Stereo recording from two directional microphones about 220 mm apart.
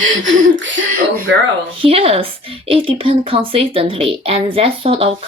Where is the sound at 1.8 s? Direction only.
25° right (ahead or behind).